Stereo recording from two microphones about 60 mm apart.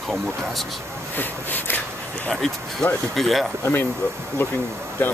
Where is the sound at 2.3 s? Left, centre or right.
Centre.